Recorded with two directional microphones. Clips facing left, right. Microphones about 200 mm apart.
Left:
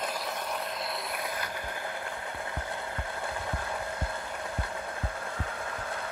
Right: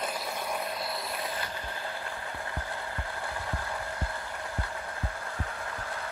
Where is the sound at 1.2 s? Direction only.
15° left (ahead or behind).